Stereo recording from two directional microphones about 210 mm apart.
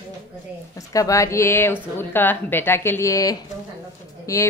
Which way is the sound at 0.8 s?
15° left (ahead or behind).